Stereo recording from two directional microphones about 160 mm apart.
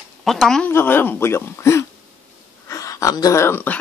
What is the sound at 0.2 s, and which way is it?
Speech, centre (ahead or behind).